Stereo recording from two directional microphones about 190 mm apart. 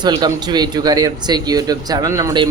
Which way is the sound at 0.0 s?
20° right (ahead or behind).